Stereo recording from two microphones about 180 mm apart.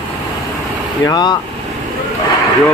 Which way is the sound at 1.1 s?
25° left (ahead or behind).